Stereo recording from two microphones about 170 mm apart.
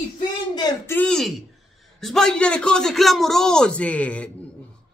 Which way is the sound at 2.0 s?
5° left (ahead or behind).